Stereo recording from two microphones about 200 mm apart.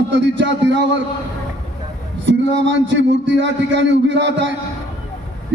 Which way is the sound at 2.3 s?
65° right (ahead or behind).